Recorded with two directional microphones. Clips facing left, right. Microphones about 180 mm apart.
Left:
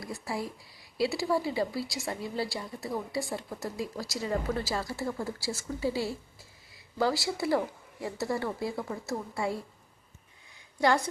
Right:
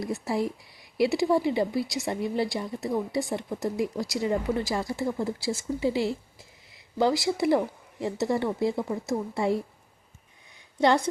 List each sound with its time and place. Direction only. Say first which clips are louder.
0.0 s speech: right 7 dB; 20° right (ahead or behind)
10.8 s speech: right 4 dB; 20° right (ahead or behind)